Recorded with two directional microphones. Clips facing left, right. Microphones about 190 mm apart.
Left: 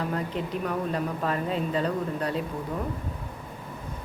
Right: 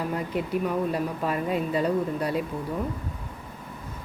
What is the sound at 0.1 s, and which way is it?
Speech, 10° right (ahead or behind).